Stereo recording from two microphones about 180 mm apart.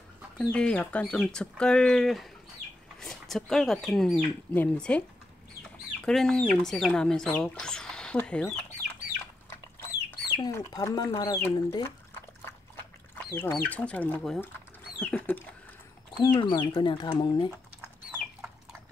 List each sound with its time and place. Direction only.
0.4 s speech: 5° left (ahead or behind)
10.4 s speech: 20° left (ahead or behind)
16.2 s speech: 25° left (ahead or behind)